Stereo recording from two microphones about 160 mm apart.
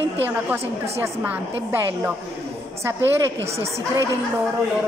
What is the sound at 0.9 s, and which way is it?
Speech, 15° right (ahead or behind).